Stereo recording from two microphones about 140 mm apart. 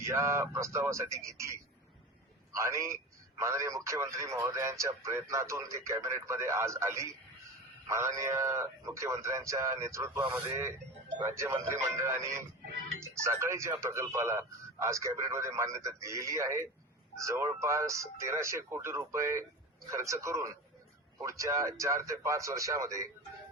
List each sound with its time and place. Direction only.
0.0 s speech: 20° right (ahead or behind)